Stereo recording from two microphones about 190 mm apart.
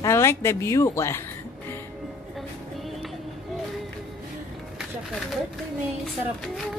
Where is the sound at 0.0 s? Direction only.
15° left (ahead or behind).